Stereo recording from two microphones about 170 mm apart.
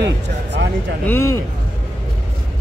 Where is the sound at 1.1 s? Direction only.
15° left (ahead or behind).